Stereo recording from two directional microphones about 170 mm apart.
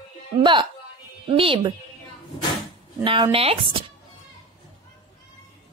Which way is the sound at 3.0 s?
30° right (ahead or behind).